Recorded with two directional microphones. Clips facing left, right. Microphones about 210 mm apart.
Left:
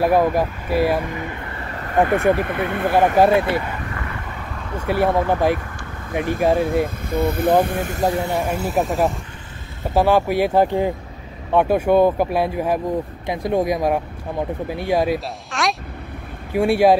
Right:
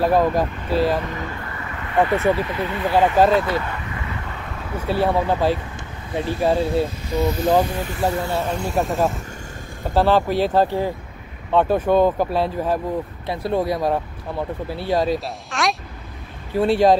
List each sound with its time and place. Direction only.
0.0 s speech: 10° left (ahead or behind)
1.6 s vehicle: 40° left (ahead or behind)
2.3 s speech: 55° left (ahead or behind)
3.2 s speech: 15° left (ahead or behind)
4.8 s speech: 15° left (ahead or behind)
5.1 s speech: 15° right (ahead or behind)
6.1 s speech: 15° left (ahead or behind)
7.1 s speech: 55° left (ahead or behind)
8.0 s speech: 15° left (ahead or behind); by 9.0 s centre (ahead or behind)
9.9 s speech: 10° left (ahead or behind)
15.1 s speech: centre (ahead or behind)
16.5 s speech: 10° left (ahead or behind)